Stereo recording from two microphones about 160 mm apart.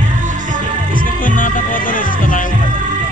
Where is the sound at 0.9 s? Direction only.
55° left (ahead or behind).